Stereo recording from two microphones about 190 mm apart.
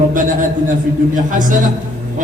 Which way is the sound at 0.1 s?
45° right (ahead or behind).